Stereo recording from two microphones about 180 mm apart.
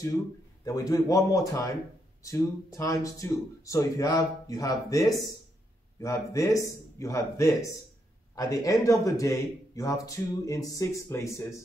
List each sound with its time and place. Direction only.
0.7 s a man's voice: 20° left (ahead or behind)